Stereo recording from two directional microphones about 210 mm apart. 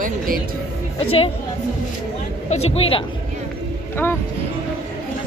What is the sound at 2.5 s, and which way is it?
Speech, 30° left (ahead or behind).